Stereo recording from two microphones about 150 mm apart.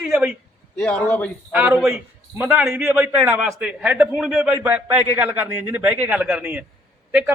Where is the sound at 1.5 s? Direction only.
10° right (ahead or behind).